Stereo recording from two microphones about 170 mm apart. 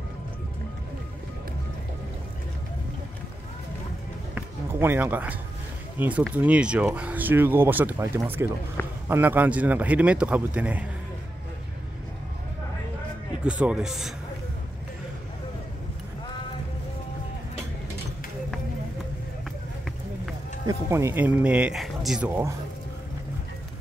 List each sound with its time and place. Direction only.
4.4 s run: 15° right (ahead or behind)
5.9 s speech: 10° right (ahead or behind)
8.8 s a man's voice: 15° left (ahead or behind)
9.1 s speech: 10° right (ahead or behind)
13.4 s speech: 5° right (ahead or behind)
20.6 s speech: 15° right (ahead or behind)